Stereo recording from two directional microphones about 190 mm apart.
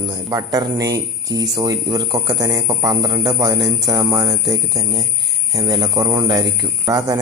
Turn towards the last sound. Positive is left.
turn(degrees=-20)  # may be behind; listen again after turning